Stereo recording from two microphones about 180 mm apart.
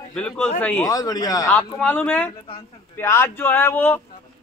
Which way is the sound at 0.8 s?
20° left (ahead or behind).